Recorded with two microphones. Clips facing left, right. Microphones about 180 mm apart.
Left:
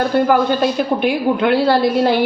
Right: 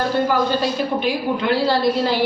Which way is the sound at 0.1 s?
55° left (ahead or behind).